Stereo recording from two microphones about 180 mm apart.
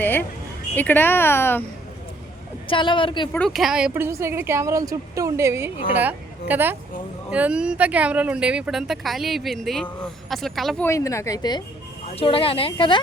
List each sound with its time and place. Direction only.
0.0 s speech: 10° left (ahead or behind)
2.6 s a woman's voice: 30° left (ahead or behind)
3.3 s a woman's voice: centre (ahead or behind)
10.8 s speech: 15° left (ahead or behind)
12.0 s speech: 30° left (ahead or behind)